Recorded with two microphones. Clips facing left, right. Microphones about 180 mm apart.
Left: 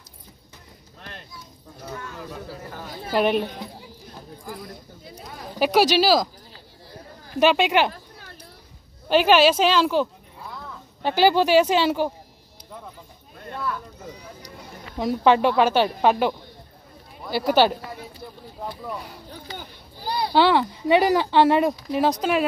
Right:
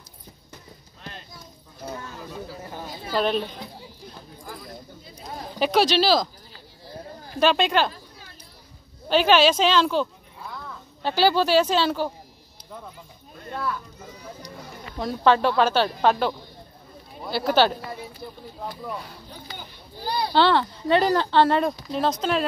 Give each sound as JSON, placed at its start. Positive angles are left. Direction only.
{"t": 1.9, "sound": "a sound", "side_deg": -25}
{"t": 3.1, "sound": "speech", "side_deg": 15}
{"t": 5.6, "sound": "speech", "side_deg": 10}
{"t": 7.3, "sound": "speech", "side_deg": 15}
{"t": 9.1, "sound": "speech", "side_deg": 10}
{"t": 15.0, "sound": "speech", "side_deg": 15}
{"t": 20.3, "sound": "speech", "side_deg": 10}